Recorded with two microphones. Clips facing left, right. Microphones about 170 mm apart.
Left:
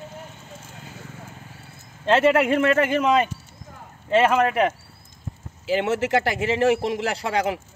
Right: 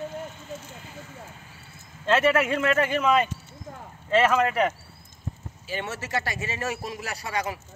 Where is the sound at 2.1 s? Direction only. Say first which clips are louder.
Left 4 dB; 30° left (ahead or behind).